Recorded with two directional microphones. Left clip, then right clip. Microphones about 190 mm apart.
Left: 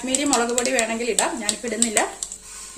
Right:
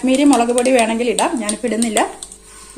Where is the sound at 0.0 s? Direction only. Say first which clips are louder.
Right 8 dB; 35° right (ahead or behind).